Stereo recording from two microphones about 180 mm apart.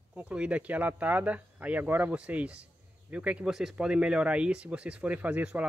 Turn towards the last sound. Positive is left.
turn(degrees=-5)  # may be behind; listen again after turning